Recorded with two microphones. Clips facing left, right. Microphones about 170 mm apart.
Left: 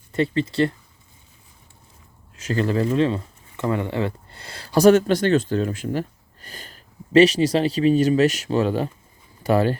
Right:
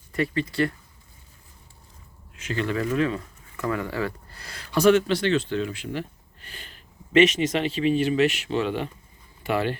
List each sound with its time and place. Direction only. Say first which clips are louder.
0.1 s speech: left 4 dB; 25° left (ahead or behind)
2.3 s speech: left 5 dB; 40° left (ahead or behind)